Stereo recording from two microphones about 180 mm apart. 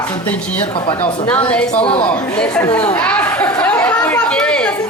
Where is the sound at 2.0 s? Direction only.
5° left (ahead or behind).